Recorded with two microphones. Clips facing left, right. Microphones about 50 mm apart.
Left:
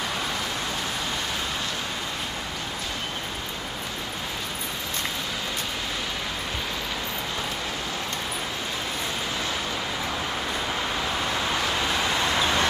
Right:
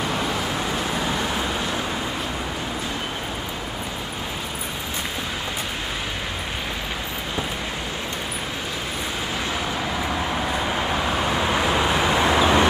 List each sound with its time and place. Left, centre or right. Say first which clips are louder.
11.3 s vehicle: right 5 dB; centre